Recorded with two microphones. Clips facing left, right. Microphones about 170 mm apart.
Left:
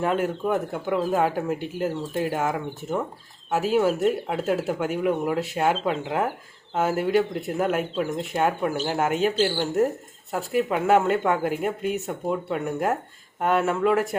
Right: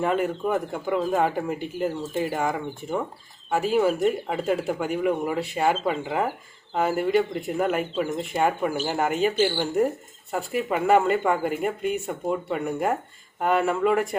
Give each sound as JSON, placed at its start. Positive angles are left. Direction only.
{"t": 0.0, "sound": "speech", "side_deg": 0}